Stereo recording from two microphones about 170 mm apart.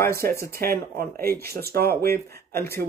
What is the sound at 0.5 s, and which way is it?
Speech, 60° right (ahead or behind).